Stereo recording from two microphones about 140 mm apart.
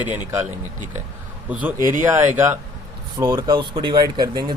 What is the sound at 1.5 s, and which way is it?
A man's voice, 10° right (ahead or behind).